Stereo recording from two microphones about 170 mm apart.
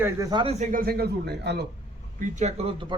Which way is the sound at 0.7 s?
60° right (ahead or behind).